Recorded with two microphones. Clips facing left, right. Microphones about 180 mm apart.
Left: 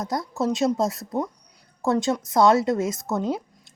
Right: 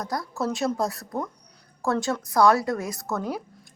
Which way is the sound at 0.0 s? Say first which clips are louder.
Left 3 dB; 20° left (ahead or behind).